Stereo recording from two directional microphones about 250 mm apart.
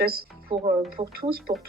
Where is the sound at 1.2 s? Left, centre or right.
Right.